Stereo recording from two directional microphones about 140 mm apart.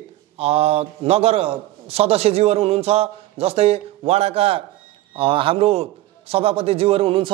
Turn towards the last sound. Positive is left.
turn(degrees=-40)  # may be behind; listen again after turning